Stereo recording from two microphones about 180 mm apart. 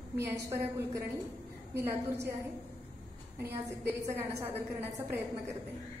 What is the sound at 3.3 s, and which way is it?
A woman's voice, 10° right (ahead or behind).